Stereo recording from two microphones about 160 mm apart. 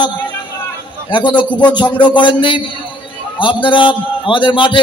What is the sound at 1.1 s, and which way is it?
Music, 30° left (ahead or behind).